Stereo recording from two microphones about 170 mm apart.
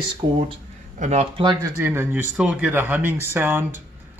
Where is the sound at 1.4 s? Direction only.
25° right (ahead or behind).